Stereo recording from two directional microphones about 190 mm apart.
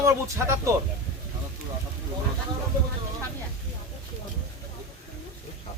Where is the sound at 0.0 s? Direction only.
15° right (ahead or behind).